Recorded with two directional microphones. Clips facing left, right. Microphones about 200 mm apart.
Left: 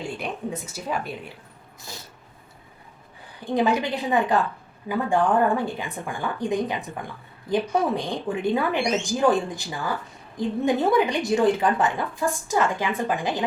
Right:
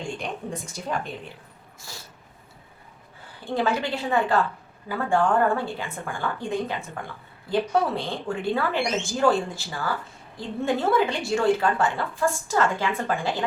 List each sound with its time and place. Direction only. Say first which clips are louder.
0.2 s a woman's voice: left 2 dB; 5° left (ahead or behind)
3.4 s a woman's voice: left 3 dB; 15° left (ahead or behind)